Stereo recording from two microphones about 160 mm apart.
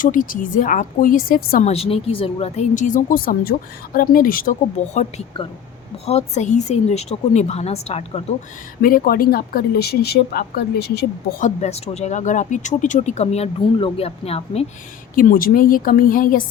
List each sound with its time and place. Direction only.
0.0 s a woman's voice: 55° left (ahead or behind)
1.6 s a woman's voice: 40° left (ahead or behind); by 4.5 s 60° left (ahead or behind)
6.1 s speech: 45° left (ahead or behind)
8.8 s speech: 65° left (ahead or behind)
11.4 s speech: 45° left (ahead or behind)
15.1 s a woman's voice: 60° left (ahead or behind)